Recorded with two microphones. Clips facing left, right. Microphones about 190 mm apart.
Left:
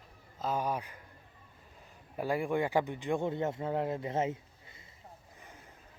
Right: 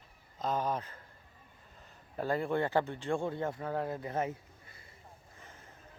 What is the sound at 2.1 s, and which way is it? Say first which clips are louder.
Speech: left 1 dB; 10° left (ahead or behind).